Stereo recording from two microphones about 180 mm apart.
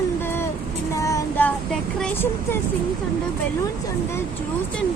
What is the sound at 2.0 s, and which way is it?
Speech, 10° left (ahead or behind).